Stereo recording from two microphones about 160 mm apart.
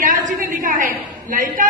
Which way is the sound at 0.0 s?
55° right (ahead or behind).